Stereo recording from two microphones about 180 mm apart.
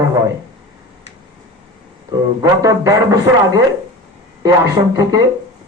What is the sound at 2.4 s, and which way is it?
Speech, 20° right (ahead or behind).